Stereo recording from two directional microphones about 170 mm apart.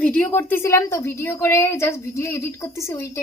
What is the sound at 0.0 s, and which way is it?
A woman's voice, 10° left (ahead or behind).